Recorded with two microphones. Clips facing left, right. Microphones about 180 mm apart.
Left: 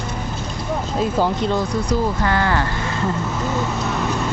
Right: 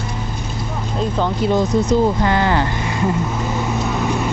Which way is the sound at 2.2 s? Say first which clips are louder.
Right 3 dB; 20° right (ahead or behind).